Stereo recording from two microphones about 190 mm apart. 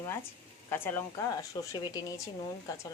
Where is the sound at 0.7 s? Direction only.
10° left (ahead or behind).